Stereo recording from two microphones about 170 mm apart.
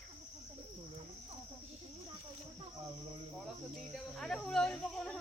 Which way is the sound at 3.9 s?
Centre (ahead or behind).